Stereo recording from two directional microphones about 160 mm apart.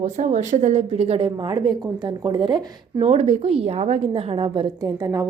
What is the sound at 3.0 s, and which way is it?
A woman's voice, 45° right (ahead or behind).